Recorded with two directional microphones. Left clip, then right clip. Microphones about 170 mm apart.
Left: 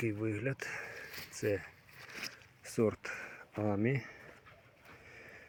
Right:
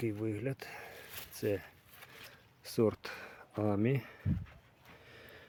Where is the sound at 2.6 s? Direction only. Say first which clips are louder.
Right 1 dB; 25° right (ahead or behind).